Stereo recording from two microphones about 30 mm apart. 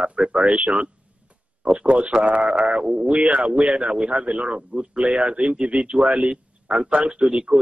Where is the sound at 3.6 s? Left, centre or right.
Centre.